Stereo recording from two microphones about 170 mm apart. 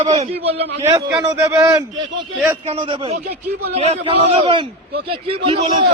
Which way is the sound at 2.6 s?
30° right (ahead or behind).